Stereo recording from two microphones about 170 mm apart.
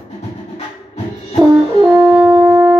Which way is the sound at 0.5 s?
40° left (ahead or behind).